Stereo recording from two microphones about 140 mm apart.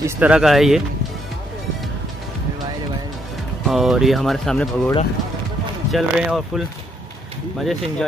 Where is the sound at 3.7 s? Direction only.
Centre (ahead or behind).